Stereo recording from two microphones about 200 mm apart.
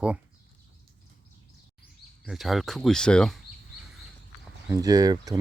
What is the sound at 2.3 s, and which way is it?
Speech, centre (ahead or behind).